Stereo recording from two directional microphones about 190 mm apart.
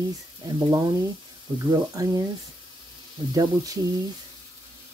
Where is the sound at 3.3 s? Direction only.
20° right (ahead or behind).